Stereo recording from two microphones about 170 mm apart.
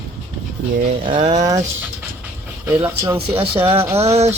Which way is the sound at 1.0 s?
30° right (ahead or behind).